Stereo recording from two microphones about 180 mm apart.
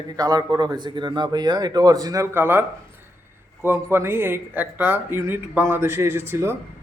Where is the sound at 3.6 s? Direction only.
15° right (ahead or behind).